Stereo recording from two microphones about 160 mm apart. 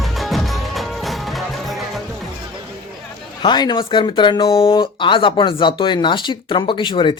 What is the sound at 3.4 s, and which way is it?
Speech, 30° left (ahead or behind).